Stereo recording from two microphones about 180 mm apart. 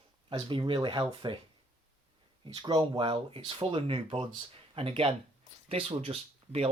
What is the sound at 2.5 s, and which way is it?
Speech, 25° right (ahead or behind).